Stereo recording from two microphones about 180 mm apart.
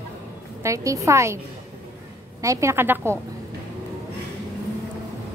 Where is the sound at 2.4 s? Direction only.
15° right (ahead or behind).